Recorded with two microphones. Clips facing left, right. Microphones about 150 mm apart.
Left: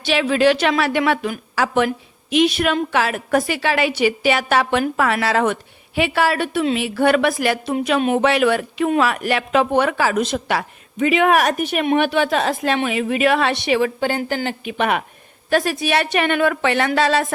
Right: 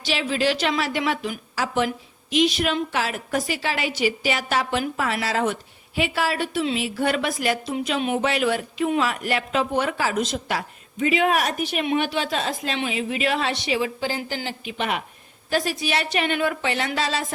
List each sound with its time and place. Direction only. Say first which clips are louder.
0.0 s a woman's voice: left 7 dB; 65° left (ahead or behind)